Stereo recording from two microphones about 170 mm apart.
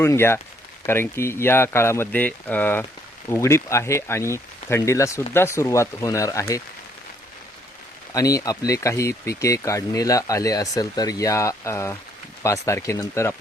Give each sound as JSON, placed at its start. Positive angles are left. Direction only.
{"t": 0.0, "sound": "speech", "side_deg": 15}
{"t": 8.1, "sound": "speech", "side_deg": 20}